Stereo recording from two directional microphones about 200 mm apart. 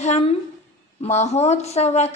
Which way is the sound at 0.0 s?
35° left (ahead or behind).